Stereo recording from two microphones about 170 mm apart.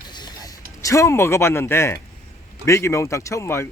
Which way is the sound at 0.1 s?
25° left (ahead or behind).